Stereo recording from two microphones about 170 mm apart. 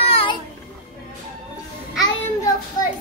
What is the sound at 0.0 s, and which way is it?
Music, 30° left (ahead or behind).